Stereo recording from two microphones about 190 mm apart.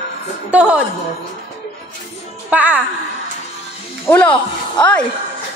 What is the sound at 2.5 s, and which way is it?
Speech, 5° right (ahead or behind).